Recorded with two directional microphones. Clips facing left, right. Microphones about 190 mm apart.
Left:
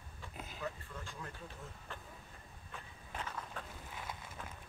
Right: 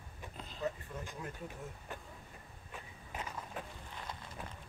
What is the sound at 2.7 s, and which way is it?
Walk, 10° right (ahead or behind).